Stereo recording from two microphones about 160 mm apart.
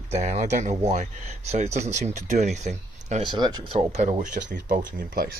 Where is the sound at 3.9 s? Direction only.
50° right (ahead or behind).